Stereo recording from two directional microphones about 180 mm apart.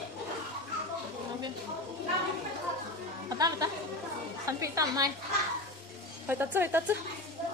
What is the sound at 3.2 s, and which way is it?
Music, 20° right (ahead or behind).